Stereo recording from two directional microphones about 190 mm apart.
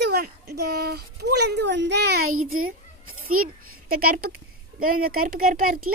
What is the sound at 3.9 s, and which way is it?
Speech, 50° right (ahead or behind).